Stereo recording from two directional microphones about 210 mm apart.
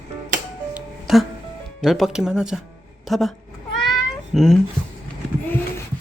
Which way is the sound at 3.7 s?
Centre (ahead or behind).